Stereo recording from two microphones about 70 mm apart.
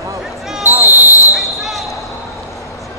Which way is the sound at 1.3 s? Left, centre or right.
Centre.